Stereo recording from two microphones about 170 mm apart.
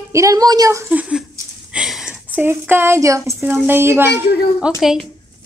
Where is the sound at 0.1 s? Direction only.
20° right (ahead or behind).